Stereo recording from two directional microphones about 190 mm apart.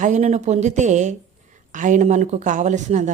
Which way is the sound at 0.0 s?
35° right (ahead or behind).